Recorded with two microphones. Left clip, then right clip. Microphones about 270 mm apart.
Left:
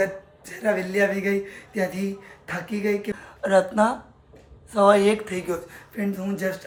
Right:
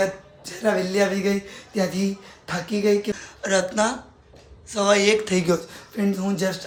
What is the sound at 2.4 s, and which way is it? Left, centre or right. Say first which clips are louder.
Speech: right 4 dB; centre.